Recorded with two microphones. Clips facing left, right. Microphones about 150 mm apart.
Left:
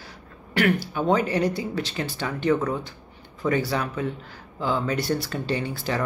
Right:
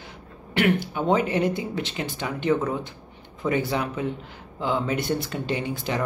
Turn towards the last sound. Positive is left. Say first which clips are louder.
# even
turn(degrees=-20)  # may be behind; listen again after turning